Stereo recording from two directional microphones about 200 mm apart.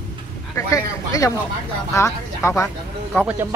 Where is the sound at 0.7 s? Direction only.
15° left (ahead or behind).